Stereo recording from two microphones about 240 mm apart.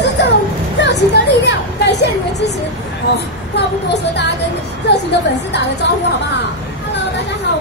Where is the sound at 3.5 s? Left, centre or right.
Left.